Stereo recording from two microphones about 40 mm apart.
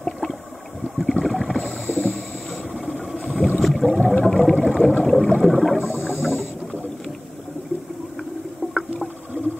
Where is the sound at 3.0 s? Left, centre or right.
Centre.